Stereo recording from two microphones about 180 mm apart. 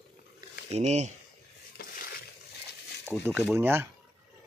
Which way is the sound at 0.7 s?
40° right (ahead or behind).